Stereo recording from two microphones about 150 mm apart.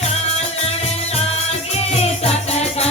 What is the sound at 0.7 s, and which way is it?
Music, 45° left (ahead or behind).